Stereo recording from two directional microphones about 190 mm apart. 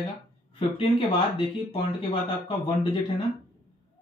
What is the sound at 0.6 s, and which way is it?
Speech, 25° left (ahead or behind).